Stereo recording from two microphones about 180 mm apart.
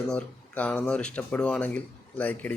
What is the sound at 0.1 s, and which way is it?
Speech, 5° left (ahead or behind).